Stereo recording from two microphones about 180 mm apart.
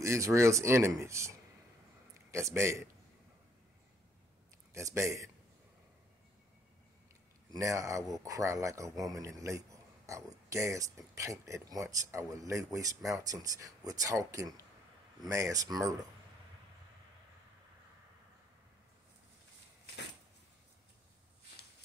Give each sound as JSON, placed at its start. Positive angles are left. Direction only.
{"t": 0.0, "sound": "speech", "side_deg": -15}
{"t": 2.3, "sound": "speech", "side_deg": -15}
{"t": 4.7, "sound": "speech", "side_deg": -15}
{"t": 7.5, "sound": "a man's voice", "side_deg": -15}